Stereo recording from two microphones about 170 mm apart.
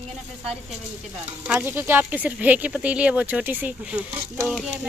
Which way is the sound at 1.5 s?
10° right (ahead or behind).